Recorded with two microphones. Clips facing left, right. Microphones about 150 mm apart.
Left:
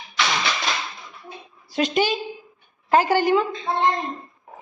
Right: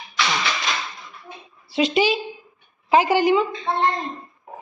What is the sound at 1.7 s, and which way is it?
A woman's voice, centre (ahead or behind).